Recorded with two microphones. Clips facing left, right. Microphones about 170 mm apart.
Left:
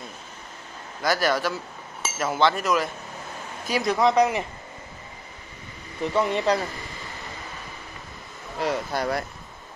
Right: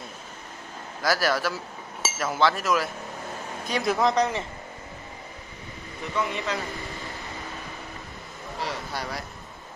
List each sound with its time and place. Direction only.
1.0 s speech: centre (ahead or behind)
6.1 s speech: 35° left (ahead or behind)
8.6 s speech: 50° left (ahead or behind)